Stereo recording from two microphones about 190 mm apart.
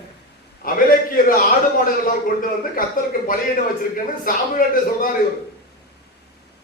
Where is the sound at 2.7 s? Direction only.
50° left (ahead or behind).